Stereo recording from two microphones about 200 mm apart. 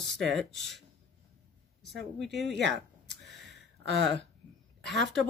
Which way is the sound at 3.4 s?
60° right (ahead or behind).